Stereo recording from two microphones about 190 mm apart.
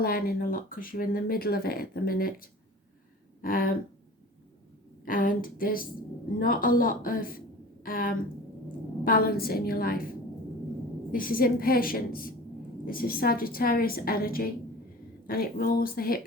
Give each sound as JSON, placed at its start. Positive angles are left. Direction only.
{"t": 0.0, "sound": "speech", "side_deg": 50}
{"t": 5.0, "sound": "speech", "side_deg": 45}
{"t": 11.1, "sound": "speech", "side_deg": 50}